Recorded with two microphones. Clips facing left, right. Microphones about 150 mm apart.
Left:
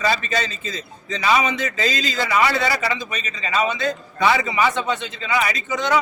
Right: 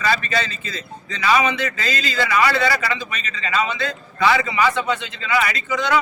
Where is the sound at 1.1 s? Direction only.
20° left (ahead or behind).